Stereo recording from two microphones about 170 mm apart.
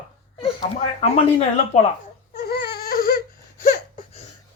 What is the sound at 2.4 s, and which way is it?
Baby cry, 65° left (ahead or behind).